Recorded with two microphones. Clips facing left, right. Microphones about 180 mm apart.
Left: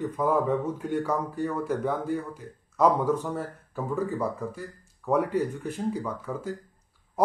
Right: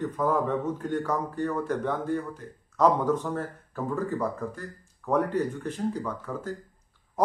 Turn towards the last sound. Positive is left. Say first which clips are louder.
# left 1 dB
turn(degrees=10)  # may be behind; listen again after turning